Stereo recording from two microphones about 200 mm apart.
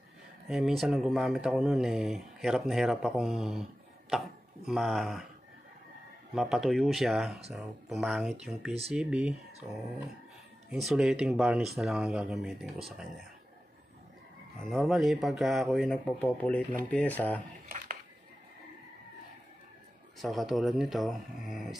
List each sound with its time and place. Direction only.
0.5 s speech: centre (ahead or behind)
4.6 s speech: centre (ahead or behind)
6.3 s speech: centre (ahead or behind)
10.7 s speech: centre (ahead or behind)
14.6 s speech: centre (ahead or behind)
17.6 s a sound: 40° right (ahead or behind)
20.2 s speech: centre (ahead or behind)